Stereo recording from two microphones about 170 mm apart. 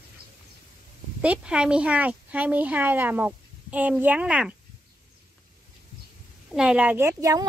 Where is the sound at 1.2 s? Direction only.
5° right (ahead or behind).